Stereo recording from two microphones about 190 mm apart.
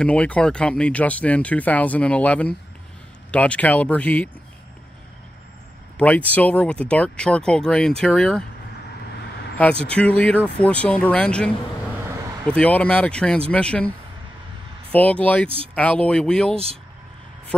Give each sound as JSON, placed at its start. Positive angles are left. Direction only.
{"t": 0.0, "sound": "speech", "side_deg": 5}
{"t": 5.9, "sound": "speech", "side_deg": 10}
{"t": 9.8, "sound": "speech", "side_deg": 5}